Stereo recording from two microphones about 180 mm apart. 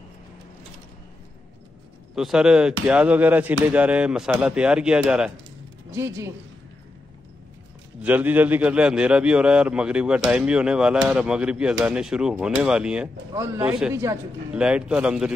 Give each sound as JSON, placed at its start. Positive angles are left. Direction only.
{"t": 2.1, "sound": "a man's voice", "side_deg": -5}
{"t": 5.9, "sound": "speech", "side_deg": -15}
{"t": 8.0, "sound": "a man's voice", "side_deg": -10}